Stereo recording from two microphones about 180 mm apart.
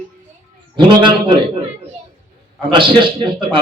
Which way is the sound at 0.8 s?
25° right (ahead or behind).